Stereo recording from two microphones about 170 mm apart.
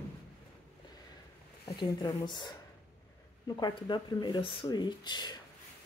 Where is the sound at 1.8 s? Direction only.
25° left (ahead or behind).